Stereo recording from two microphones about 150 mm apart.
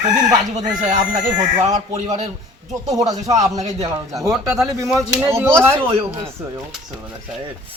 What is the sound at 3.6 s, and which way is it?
Speech, 45° right (ahead or behind).